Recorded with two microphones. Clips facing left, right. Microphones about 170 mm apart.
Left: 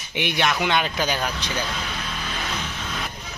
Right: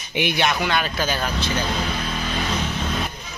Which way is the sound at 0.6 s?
20° left (ahead or behind).